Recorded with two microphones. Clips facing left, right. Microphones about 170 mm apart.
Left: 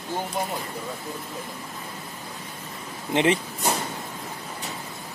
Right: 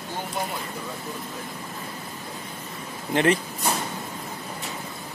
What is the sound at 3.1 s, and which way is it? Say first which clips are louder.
Speech: even; 20° left (ahead or behind).